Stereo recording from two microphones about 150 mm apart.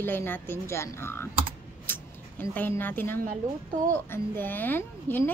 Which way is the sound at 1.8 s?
15° left (ahead or behind).